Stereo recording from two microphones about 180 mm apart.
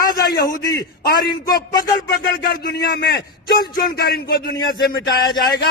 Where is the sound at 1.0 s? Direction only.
55° left (ahead or behind).